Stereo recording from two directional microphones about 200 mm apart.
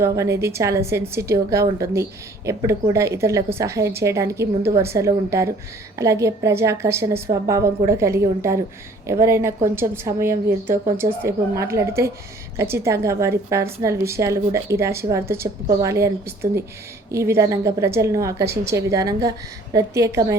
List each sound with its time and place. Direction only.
0.0 s a woman's voice: 15° right (ahead or behind)